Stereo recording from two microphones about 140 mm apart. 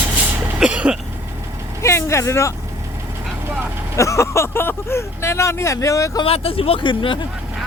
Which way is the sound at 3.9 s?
20° left (ahead or behind).